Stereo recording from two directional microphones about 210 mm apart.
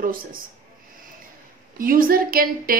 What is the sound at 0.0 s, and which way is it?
Speech, 40° right (ahead or behind).